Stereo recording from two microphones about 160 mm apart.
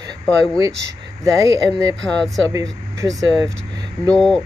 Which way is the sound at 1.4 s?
20° right (ahead or behind).